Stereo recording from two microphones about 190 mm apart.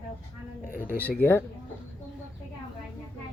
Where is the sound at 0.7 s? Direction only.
45° left (ahead or behind).